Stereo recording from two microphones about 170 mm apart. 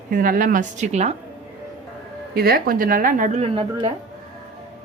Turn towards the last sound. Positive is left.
turn(degrees=-35)  # may be behind; listen again after turning